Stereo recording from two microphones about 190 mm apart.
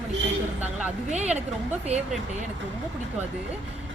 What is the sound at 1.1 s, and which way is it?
Speech, 35° right (ahead or behind).